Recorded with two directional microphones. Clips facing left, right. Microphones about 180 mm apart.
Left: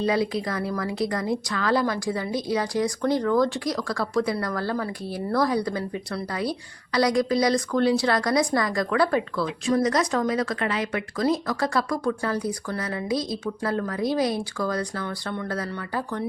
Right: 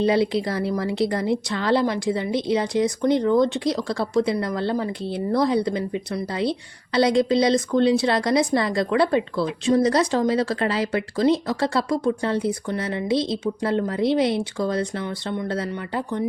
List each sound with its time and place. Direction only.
0.0 s speech: 30° right (ahead or behind)